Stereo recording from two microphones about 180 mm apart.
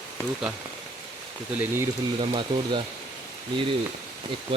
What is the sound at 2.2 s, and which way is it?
Speech, 30° right (ahead or behind).